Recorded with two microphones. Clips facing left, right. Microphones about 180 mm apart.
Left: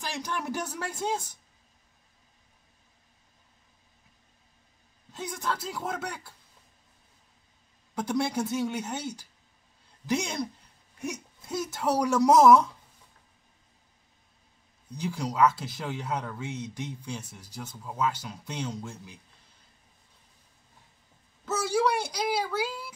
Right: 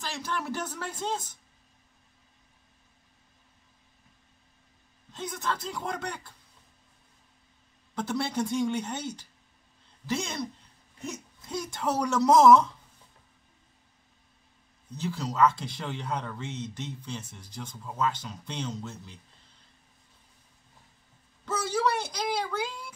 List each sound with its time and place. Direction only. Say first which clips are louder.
0.0 s speech: even; 15° left (ahead or behind)
5.1 s speech: even; 10° left (ahead or behind)
7.9 s speech: left 2 dB; 15° left (ahead or behind)
14.9 s speech: left 1 dB; 15° left (ahead or behind)
21.5 s speech: left 2 dB; 10° left (ahead or behind)